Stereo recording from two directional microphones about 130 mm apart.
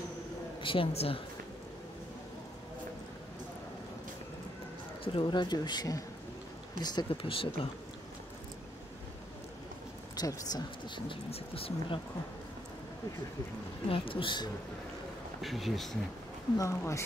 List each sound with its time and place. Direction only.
0.6 s speech: 40° left (ahead or behind)
5.0 s speech: 40° left (ahead or behind)
7.2 s speech: 45° left (ahead or behind)
10.1 s speech: 30° left (ahead or behind)
11.1 s speech: 50° left (ahead or behind)
13.8 s speech: 45° left (ahead or behind)
15.4 s speech: centre (ahead or behind)
16.5 s speech: 25° left (ahead or behind)